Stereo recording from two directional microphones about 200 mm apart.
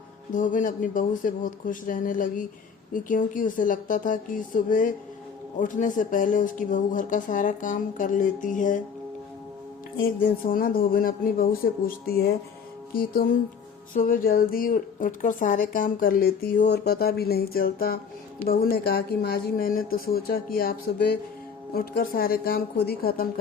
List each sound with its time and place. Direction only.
0.3 s speech: 40° left (ahead or behind)
10.0 s speech: 45° left (ahead or behind)